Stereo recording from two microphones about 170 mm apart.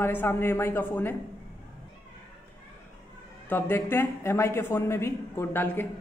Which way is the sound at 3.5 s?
15° left (ahead or behind).